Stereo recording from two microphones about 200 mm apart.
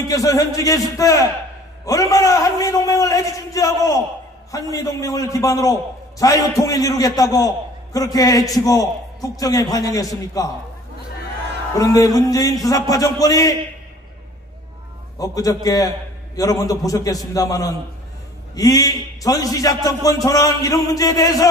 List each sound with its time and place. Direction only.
0.1 s a man's voice: 15° left (ahead or behind)
11.7 s a man's voice: 15° left (ahead or behind)
15.1 s a man's voice: 15° left (ahead or behind)